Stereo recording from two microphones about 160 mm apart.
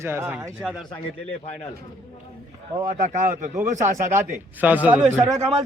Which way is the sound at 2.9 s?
50° right (ahead or behind).